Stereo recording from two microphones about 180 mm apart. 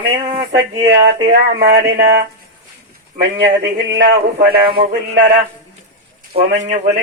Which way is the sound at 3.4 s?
70° right (ahead or behind).